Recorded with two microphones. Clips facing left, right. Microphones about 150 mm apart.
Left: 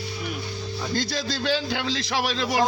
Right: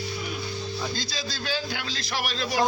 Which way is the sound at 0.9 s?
60° left (ahead or behind).